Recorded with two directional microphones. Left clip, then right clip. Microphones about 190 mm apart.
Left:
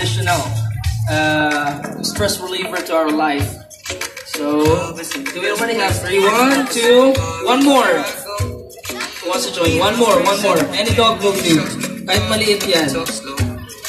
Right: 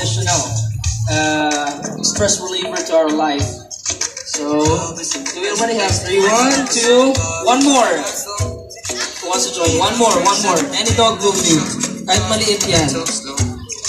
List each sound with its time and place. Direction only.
1.0 s music: 15° right (ahead or behind)
2.5 s speech: 10° right (ahead or behind)
4.5 s speech: 15° right (ahead or behind); by 7.9 s 30° right (ahead or behind)
9.3 s speech: 35° right (ahead or behind)